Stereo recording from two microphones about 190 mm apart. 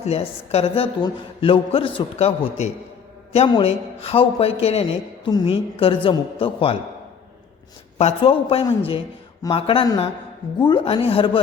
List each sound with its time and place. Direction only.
0.0 s a man's voice: 35° left (ahead or behind)
7.9 s a man's voice: 30° left (ahead or behind)